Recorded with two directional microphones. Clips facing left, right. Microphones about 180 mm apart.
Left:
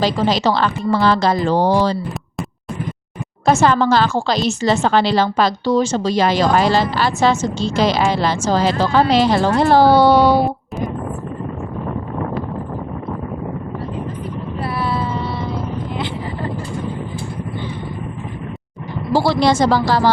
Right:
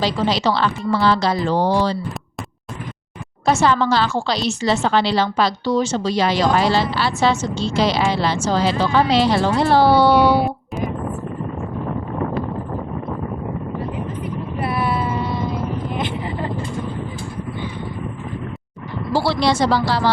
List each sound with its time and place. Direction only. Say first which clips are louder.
0.0 s speech: left 2 dB; 45° left (ahead or behind)
3.4 s speech: left 3 dB; 45° left (ahead or behind)
14.6 s vehicle: right 1 dB; 20° right (ahead or behind)
19.1 s speech: left 3 dB; 45° left (ahead or behind)